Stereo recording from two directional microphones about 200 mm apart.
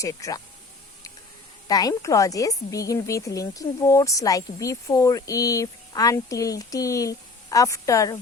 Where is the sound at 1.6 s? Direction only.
20° left (ahead or behind).